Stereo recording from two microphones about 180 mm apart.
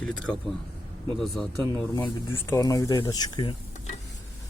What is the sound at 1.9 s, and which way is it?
Speech, 15° left (ahead or behind).